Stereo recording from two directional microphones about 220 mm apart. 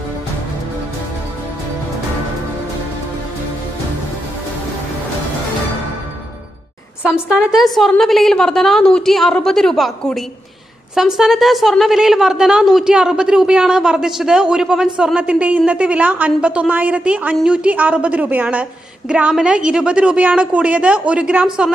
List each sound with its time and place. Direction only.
7.0 s a woman's voice: 5° right (ahead or behind)